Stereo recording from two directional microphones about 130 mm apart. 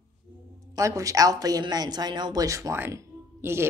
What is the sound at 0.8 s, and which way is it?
Speech, 25° right (ahead or behind).